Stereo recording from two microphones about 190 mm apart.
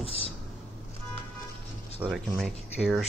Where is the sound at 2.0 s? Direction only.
Centre (ahead or behind).